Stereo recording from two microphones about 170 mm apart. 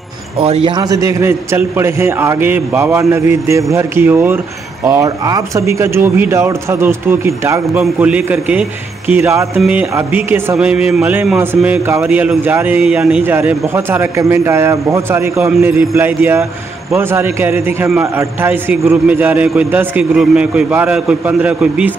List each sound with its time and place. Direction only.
0.4 s speech: 35° right (ahead or behind); by 21.9 s 10° right (ahead or behind)